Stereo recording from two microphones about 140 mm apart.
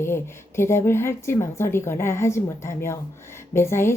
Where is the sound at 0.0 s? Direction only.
20° left (ahead or behind).